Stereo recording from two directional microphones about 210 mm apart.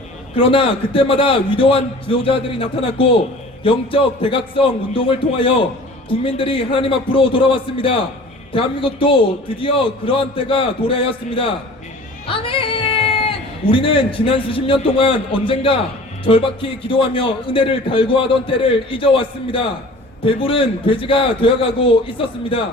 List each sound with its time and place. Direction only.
0.3 s a man's voice: 25° left (ahead or behind)